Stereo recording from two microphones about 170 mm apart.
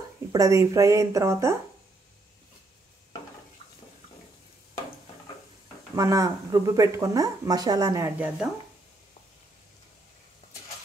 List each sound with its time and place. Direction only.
0.3 s speech: 20° right (ahead or behind)
5.9 s speech: 20° right (ahead or behind)